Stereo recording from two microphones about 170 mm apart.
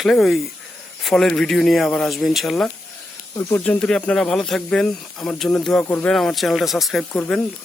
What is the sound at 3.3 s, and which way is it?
Speech, 20° left (ahead or behind).